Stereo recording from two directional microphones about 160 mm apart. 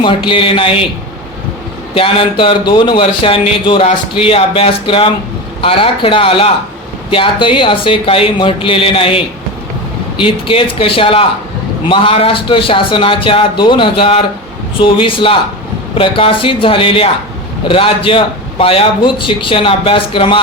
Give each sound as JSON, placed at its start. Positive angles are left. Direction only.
{"t": 0.3, "sound": "a man's voice", "side_deg": 35}
{"t": 2.0, "sound": "a man's voice", "side_deg": 30}